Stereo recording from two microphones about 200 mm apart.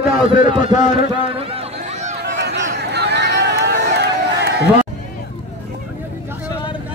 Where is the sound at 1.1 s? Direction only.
25° right (ahead or behind).